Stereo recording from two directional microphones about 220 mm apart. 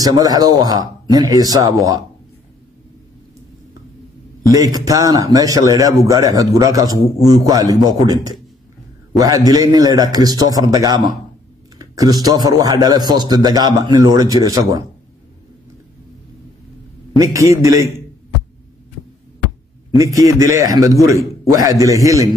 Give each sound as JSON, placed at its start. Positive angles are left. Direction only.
{"t": 0.0, "sound": "a man's voice", "side_deg": -15}
{"t": 4.5, "sound": "a man's voice", "side_deg": -15}
{"t": 17.2, "sound": "a man's voice", "side_deg": -15}
{"t": 20.0, "sound": "a man's voice", "side_deg": -15}